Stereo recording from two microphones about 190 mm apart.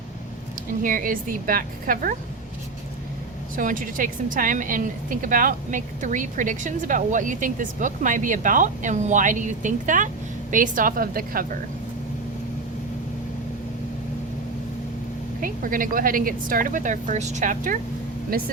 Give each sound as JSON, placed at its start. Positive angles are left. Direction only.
{"t": 0.8, "sound": "a woman's voice", "side_deg": -45}
{"t": 3.5, "sound": "a woman's voice", "side_deg": -45}
{"t": 15.4, "sound": "a woman's voice", "side_deg": -45}